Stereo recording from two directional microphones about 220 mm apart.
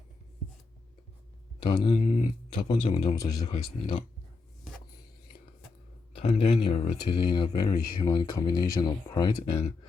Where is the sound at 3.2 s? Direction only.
15° left (ahead or behind).